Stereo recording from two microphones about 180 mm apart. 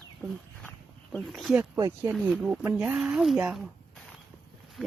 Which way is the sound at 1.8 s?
20° right (ahead or behind).